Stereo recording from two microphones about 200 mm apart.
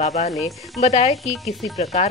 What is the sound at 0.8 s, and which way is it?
Speech, 30° left (ahead or behind).